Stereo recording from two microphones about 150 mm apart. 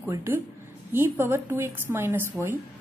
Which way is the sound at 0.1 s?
20° right (ahead or behind).